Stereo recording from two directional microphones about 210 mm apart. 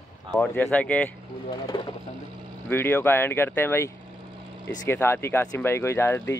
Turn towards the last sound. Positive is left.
turn(degrees=10)  # may be behind; listen again after turning